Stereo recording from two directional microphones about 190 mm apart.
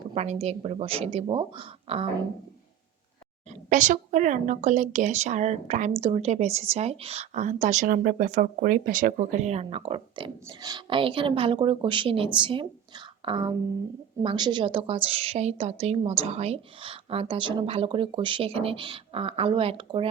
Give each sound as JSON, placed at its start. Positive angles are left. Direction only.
{"t": 0.1, "sound": "a woman's voice", "side_deg": -35}
{"t": 3.7, "sound": "a woman's voice", "side_deg": -40}